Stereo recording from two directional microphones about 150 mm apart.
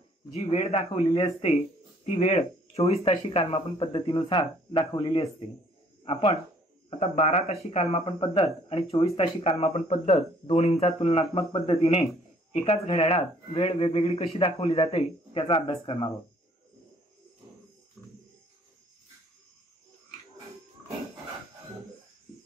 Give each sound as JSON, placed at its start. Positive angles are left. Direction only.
{"t": 0.4, "sound": "speech", "side_deg": 40}
{"t": 6.9, "sound": "speech", "side_deg": 45}
{"t": 18.0, "sound": "wild animals", "side_deg": -5}